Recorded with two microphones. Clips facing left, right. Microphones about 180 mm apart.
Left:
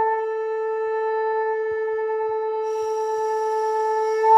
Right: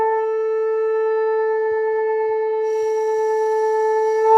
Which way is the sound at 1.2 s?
90° right.